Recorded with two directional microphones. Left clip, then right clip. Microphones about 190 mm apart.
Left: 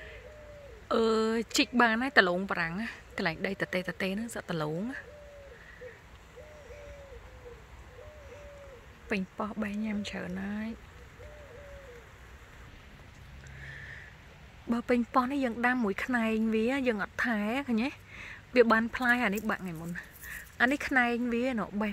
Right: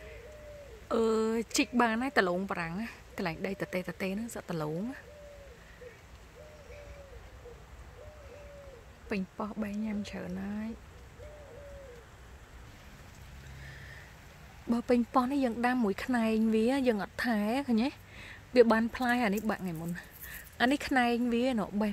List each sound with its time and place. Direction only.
0.8 s a woman's voice: centre (ahead or behind)
9.4 s a woman's voice: 5° left (ahead or behind)
14.7 s a woman's voice: 15° right (ahead or behind)